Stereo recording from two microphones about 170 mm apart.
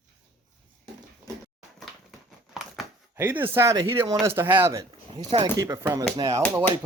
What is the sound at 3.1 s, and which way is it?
Speech, 10° right (ahead or behind).